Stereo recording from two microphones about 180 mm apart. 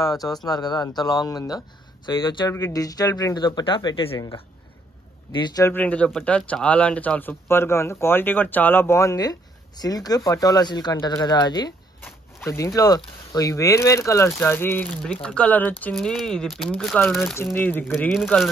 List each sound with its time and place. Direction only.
0.5 s speech: 20° left (ahead or behind)
5.3 s speech: 25° left (ahead or behind)
5.7 s speech: 10° left (ahead or behind)
18.1 s speech: centre (ahead or behind)